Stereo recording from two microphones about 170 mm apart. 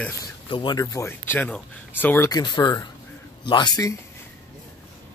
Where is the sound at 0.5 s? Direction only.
25° left (ahead or behind).